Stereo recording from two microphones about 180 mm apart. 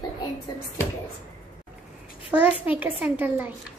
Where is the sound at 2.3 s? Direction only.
10° right (ahead or behind).